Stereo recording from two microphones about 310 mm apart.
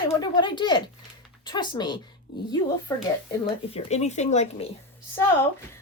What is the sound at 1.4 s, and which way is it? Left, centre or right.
Speech, centre.